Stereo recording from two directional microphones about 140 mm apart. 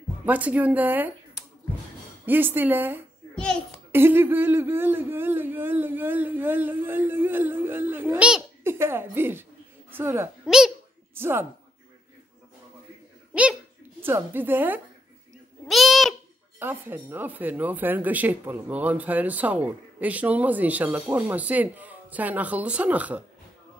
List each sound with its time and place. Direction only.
0.2 s speech: 10° right (ahead or behind)
2.2 s speech: 15° right (ahead or behind)
3.3 s a sound: 5° left (ahead or behind)
3.9 s a woman's voice: 15° right (ahead or behind)
10.4 s a child's voice: 5° right (ahead or behind)
11.1 s speech: 15° right (ahead or behind)
13.3 s speech: 5° right (ahead or behind)
15.7 s babbling: centre (ahead or behind)
16.5 s speech: 15° right (ahead or behind)